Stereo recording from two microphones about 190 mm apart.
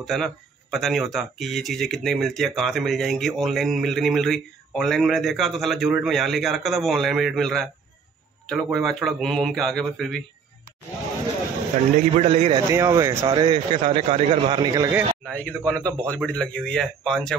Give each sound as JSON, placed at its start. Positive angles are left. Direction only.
{"t": 0.0, "sound": "speech", "side_deg": 0}
{"t": 12.0, "sound": "a man's voice", "side_deg": -35}
{"t": 12.7, "sound": "speech", "side_deg": -15}
{"t": 13.8, "sound": "a man's voice", "side_deg": -35}
{"t": 15.2, "sound": "a man's voice", "side_deg": 5}